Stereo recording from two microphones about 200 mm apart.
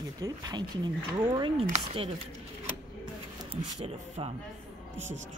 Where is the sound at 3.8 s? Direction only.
30° right (ahead or behind).